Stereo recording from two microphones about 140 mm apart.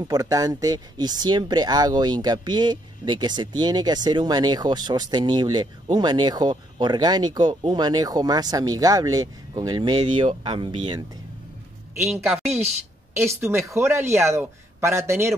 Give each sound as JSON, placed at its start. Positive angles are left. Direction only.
{"t": 0.1, "sound": "speech", "side_deg": -25}
{"t": 13.1, "sound": "speech", "side_deg": -15}